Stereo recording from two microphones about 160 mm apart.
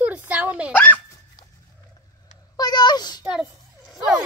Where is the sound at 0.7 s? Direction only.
10° left (ahead or behind).